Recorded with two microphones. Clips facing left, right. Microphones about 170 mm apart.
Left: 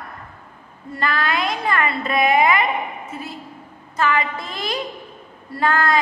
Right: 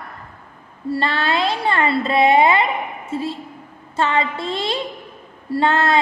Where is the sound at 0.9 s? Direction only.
30° right (ahead or behind).